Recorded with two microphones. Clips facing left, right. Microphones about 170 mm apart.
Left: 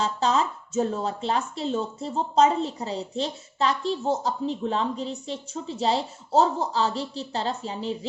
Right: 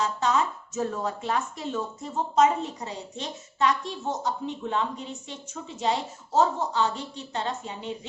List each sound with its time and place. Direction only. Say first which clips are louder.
0.0 s speech: left 1 dB; 30° left (ahead or behind)